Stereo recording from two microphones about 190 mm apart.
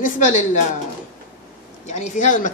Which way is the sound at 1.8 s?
40° left (ahead or behind).